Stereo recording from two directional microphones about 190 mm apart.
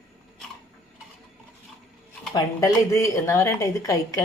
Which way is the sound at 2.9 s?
15° left (ahead or behind).